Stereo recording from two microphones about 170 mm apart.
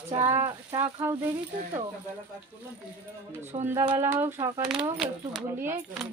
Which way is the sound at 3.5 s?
30° right (ahead or behind).